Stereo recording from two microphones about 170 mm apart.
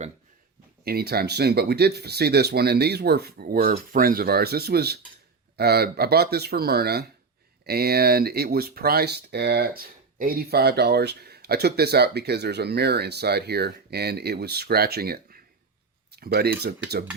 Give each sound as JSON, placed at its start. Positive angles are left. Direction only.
{"t": 0.9, "sound": "speech", "side_deg": -65}